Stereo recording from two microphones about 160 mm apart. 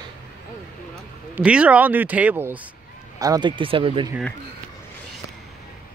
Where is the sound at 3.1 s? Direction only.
25° right (ahead or behind).